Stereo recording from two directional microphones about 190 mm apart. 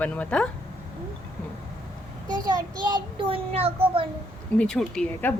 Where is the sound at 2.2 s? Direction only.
20° right (ahead or behind).